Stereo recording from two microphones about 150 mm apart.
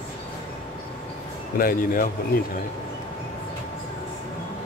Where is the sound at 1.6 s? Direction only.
70° left (ahead or behind).